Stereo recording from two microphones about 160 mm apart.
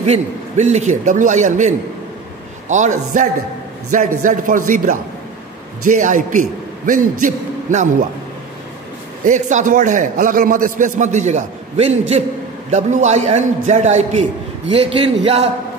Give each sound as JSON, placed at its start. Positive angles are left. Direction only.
{"t": 0.0, "sound": "a man's voice", "side_deg": -45}
{"t": 2.7, "sound": "a man's voice", "side_deg": -50}
{"t": 9.2, "sound": "a man's voice", "side_deg": -50}
{"t": 14.7, "sound": "a man's voice", "side_deg": -35}